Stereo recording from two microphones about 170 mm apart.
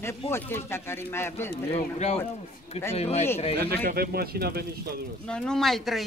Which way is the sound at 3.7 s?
65° right (ahead or behind).